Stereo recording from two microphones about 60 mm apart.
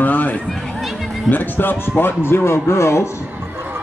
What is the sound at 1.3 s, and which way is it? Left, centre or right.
Speech, left.